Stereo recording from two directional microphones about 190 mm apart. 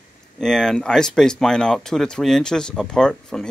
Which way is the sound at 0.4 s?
5° left (ahead or behind).